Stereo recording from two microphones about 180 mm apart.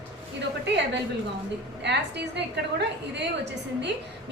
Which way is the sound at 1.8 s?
70° right (ahead or behind).